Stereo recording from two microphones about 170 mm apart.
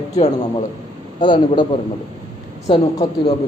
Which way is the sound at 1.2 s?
25° left (ahead or behind).